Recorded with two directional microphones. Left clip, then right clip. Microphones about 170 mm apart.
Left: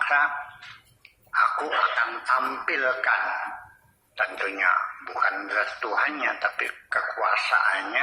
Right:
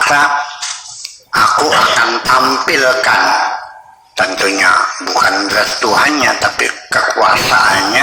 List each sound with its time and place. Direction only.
0.0 s speech: 40° right (ahead or behind)